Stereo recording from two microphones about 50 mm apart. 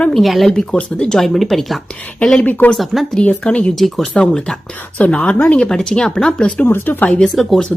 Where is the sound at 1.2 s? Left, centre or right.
Centre.